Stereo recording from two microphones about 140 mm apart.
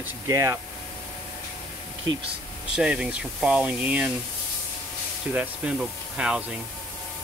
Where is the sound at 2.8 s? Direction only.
5° right (ahead or behind).